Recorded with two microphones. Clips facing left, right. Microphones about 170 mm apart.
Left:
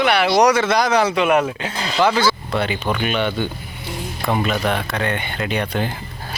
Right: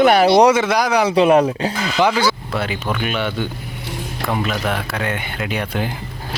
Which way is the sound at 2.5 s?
Centre (ahead or behind).